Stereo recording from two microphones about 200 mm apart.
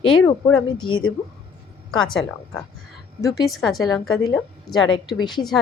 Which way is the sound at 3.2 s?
20° left (ahead or behind).